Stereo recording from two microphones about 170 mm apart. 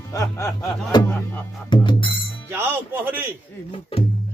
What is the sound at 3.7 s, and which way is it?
Speech, 35° left (ahead or behind).